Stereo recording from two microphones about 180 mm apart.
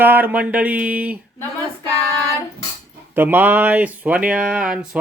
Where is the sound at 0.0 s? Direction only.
10° right (ahead or behind).